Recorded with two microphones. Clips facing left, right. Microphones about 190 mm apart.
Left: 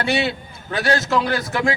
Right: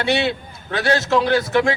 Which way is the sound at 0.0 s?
5° left (ahead or behind).